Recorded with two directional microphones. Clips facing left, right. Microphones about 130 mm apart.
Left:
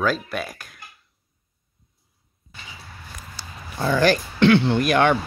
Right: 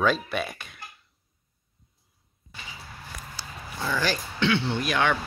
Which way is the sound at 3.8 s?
55° left (ahead or behind).